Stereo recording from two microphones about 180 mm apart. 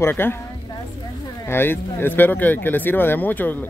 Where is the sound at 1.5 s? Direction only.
10° left (ahead or behind).